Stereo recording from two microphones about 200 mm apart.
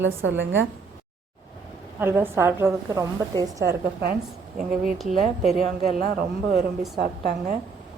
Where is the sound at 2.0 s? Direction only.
10° right (ahead or behind).